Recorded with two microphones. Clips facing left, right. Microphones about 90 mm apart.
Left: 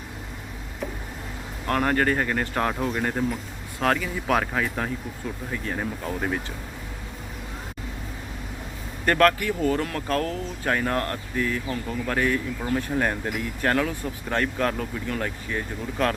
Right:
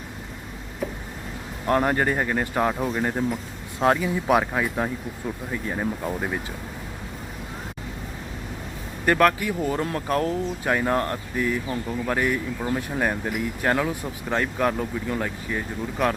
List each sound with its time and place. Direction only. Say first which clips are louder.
1.6 s speech: right 1 dB; 15° right (ahead or behind)
9.0 s speech: even; 10° right (ahead or behind)